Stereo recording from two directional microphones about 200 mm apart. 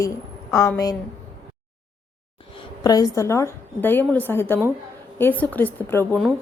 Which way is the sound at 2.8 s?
20° left (ahead or behind).